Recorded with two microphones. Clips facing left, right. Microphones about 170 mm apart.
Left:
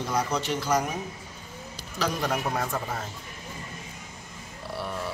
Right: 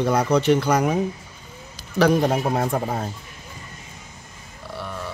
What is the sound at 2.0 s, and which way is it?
Mantra, 55° right (ahead or behind).